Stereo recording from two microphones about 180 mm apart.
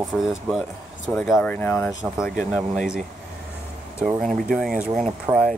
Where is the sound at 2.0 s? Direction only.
5° right (ahead or behind).